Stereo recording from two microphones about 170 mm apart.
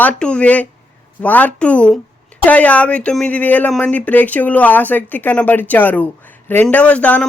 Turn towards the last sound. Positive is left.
turn(degrees=10)  # may be behind; listen again after turning